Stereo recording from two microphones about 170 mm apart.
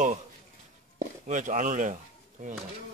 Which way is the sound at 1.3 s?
50° right (ahead or behind).